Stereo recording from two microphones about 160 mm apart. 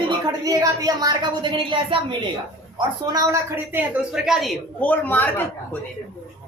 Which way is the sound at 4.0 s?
5° right (ahead or behind).